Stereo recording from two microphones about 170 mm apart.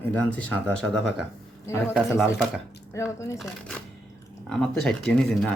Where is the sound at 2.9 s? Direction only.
20° left (ahead or behind).